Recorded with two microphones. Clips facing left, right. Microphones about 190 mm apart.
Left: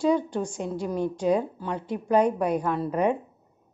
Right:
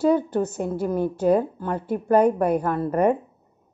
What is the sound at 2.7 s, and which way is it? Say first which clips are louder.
Speech: right 3 dB; 55° right (ahead or behind).